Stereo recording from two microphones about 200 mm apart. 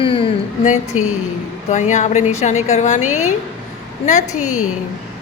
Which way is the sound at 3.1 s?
90° left.